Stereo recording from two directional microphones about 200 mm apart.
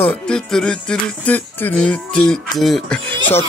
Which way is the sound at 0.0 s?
5° left (ahead or behind).